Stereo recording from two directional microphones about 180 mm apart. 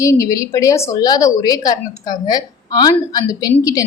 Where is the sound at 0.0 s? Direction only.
15° left (ahead or behind).